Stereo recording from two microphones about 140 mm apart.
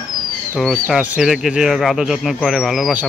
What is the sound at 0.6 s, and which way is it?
Speech, centre (ahead or behind).